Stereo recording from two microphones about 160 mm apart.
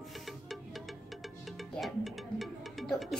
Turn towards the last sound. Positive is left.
turn(degrees=0)  # may be behind; listen again after turning